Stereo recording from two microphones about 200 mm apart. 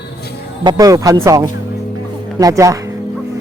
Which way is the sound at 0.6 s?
20° right (ahead or behind).